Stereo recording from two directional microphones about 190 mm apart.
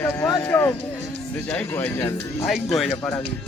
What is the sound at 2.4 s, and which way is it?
Speech, centre (ahead or behind).